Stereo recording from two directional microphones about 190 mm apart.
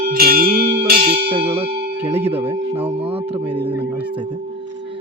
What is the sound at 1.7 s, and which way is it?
Music, 55° right (ahead or behind).